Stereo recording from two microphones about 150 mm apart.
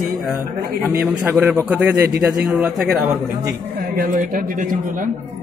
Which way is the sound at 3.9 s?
65° right (ahead or behind).